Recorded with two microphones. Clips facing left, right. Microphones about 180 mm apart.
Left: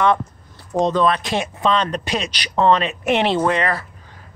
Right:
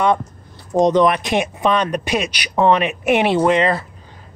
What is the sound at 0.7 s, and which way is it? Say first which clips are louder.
Speech: right 4 dB; 15° right (ahead or behind).